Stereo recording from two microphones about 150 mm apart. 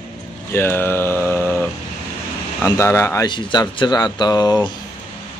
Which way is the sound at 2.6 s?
15° left (ahead or behind).